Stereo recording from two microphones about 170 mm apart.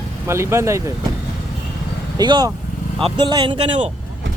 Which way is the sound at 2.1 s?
25° right (ahead or behind).